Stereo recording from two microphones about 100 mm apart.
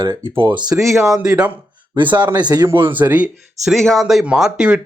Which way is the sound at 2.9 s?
15° right (ahead or behind).